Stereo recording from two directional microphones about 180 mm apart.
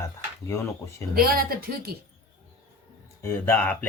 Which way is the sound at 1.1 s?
55° right (ahead or behind).